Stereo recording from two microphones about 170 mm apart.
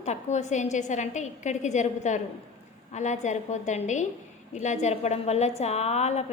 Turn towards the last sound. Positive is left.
turn(degrees=40)  # may be behind; listen again after turning